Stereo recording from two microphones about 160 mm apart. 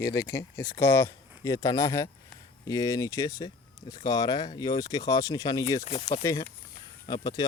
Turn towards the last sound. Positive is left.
turn(degrees=25)  # may be behind; listen again after turning